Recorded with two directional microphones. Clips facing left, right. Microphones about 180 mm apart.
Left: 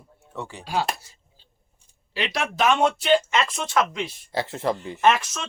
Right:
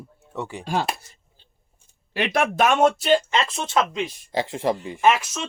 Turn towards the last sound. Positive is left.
turn(degrees=-10)  # may be behind; listen again after turning